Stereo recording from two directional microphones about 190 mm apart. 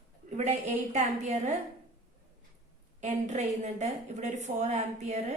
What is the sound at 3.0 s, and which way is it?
A woman's voice, 40° right (ahead or behind).